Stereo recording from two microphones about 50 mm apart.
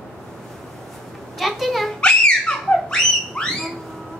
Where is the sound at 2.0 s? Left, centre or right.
Centre.